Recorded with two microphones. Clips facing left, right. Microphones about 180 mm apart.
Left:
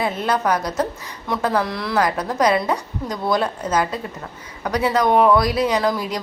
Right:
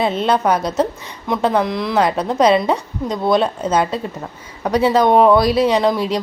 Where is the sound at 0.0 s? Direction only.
25° right (ahead or behind).